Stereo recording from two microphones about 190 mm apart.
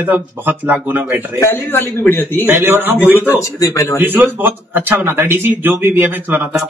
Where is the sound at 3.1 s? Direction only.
15° left (ahead or behind).